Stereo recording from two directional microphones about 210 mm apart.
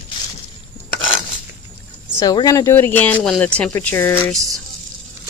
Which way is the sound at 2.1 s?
20° left (ahead or behind).